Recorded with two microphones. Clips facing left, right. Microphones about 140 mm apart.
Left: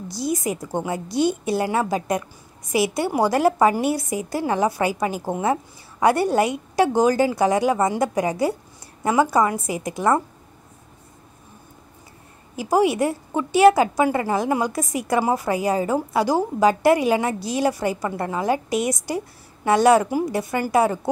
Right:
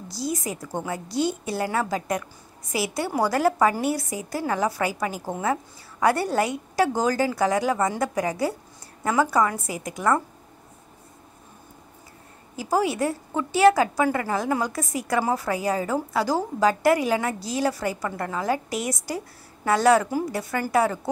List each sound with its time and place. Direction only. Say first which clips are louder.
0.1 s a woman's voice: left 4 dB; 20° left (ahead or behind)
12.5 s a woman's voice: left 5 dB; 20° left (ahead or behind)